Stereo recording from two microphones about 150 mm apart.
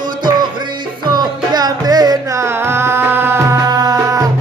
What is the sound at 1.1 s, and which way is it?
Music, 30° right (ahead or behind).